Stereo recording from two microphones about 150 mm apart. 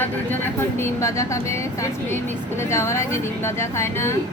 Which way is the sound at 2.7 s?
20° left (ahead or behind).